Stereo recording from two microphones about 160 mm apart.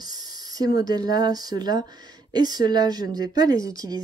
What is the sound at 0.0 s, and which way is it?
Speech, 25° right (ahead or behind).